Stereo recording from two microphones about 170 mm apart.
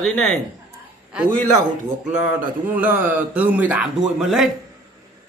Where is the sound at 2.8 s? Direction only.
10° right (ahead or behind).